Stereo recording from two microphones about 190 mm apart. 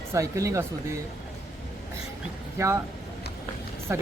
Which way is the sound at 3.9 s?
15° right (ahead or behind).